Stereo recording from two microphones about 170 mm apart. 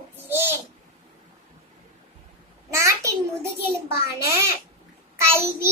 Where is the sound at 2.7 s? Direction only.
15° right (ahead or behind).